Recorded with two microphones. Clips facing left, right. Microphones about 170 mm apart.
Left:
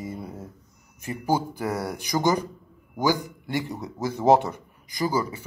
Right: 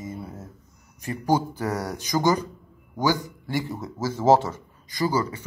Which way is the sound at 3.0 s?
15° left (ahead or behind).